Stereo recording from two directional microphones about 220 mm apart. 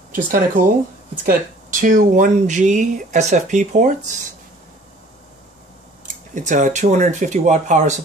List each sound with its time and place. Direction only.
0.1 s speech: 40° right (ahead or behind)
6.3 s speech: 35° right (ahead or behind)